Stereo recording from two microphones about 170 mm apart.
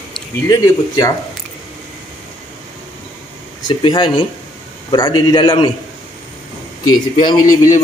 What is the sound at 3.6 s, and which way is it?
A man's voice, 25° left (ahead or behind).